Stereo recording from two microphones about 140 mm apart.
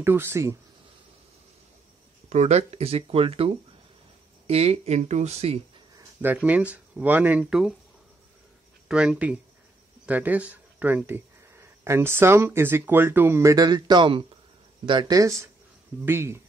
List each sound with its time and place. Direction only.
0.0 s speech: 15° right (ahead or behind)
2.2 s speech: 55° right (ahead or behind)
6.2 s speech: 10° right (ahead or behind)
8.8 s speech: 5° right (ahead or behind)